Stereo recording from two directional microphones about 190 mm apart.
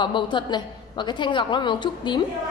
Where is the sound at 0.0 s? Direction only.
25° left (ahead or behind).